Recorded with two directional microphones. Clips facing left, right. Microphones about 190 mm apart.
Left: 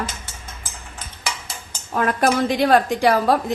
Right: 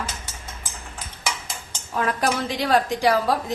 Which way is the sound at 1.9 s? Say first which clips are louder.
Left 4 dB; 55° left (ahead or behind).